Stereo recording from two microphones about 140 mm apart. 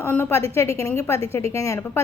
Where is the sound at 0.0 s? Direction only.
15° left (ahead or behind).